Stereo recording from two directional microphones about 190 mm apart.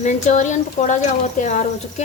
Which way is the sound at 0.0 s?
40° left (ahead or behind).